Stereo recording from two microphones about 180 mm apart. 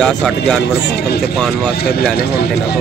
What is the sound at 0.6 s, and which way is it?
Speech, 65° left (ahead or behind).